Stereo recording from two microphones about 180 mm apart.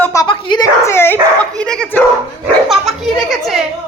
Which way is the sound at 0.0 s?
20° left (ahead or behind).